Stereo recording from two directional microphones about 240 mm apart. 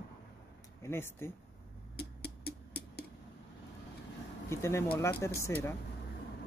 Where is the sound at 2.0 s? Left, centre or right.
Left.